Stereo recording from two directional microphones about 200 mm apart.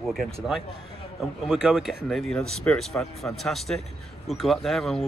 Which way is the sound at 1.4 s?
Centre (ahead or behind).